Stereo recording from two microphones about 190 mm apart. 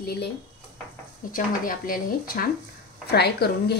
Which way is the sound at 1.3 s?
50° left (ahead or behind).